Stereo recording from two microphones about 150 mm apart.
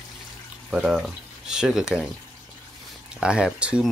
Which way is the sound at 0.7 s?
5° right (ahead or behind).